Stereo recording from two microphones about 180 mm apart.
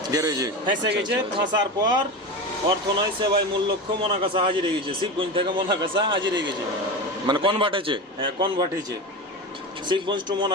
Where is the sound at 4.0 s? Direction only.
30° right (ahead or behind).